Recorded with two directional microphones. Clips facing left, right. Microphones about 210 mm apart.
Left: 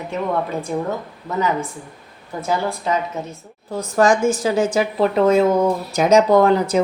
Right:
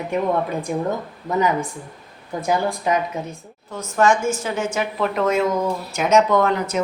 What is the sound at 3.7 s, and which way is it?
Speech, 35° left (ahead or behind).